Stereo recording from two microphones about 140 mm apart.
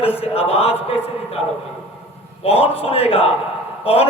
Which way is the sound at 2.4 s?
45° left (ahead or behind).